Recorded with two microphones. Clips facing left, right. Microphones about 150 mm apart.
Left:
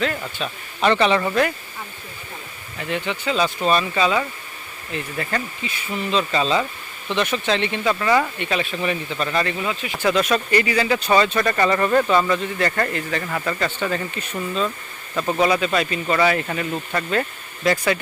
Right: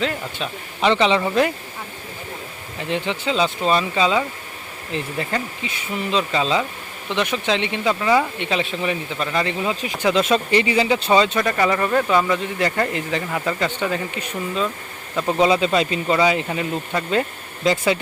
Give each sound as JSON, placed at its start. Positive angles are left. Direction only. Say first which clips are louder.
{"t": 0.0, "sound": "speech", "louder": "even", "side_deg": -20}
{"t": 2.9, "sound": "speech", "louder": "right 1 dB", "side_deg": -25}
{"t": 11.3, "sound": "speech", "louder": "even", "side_deg": -10}